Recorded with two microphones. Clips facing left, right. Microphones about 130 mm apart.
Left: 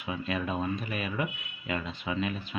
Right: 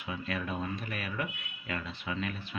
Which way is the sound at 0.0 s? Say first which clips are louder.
Left 4 dB; 20° left (ahead or behind).